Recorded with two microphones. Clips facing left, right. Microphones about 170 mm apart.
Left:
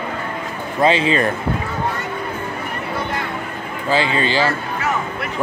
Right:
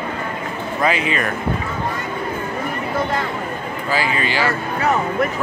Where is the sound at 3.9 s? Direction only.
25° left (ahead or behind).